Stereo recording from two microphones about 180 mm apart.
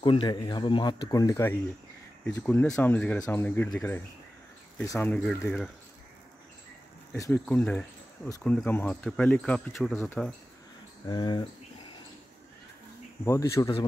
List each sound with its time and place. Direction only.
0.0 s speech: 30° left (ahead or behind); by 3.9 s centre (ahead or behind)
4.8 s speech: 15° left (ahead or behind)
7.1 s speech: 15° left (ahead or behind)
11.1 s speech: 20° left (ahead or behind)
13.2 s speech: 15° left (ahead or behind)